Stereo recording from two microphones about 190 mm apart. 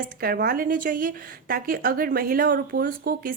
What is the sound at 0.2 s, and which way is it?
A woman's voice, 50° right (ahead or behind).